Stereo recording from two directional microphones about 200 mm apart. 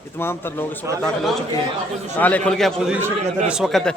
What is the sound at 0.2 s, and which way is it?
Speech, 10° left (ahead or behind).